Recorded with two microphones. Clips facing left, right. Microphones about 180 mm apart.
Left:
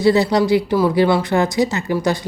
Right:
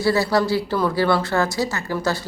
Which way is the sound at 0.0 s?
20° left (ahead or behind).